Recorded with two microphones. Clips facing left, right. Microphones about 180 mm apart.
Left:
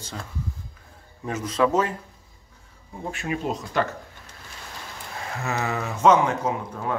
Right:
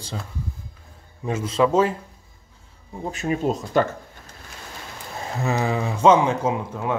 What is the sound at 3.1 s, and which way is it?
Speech, 40° right (ahead or behind).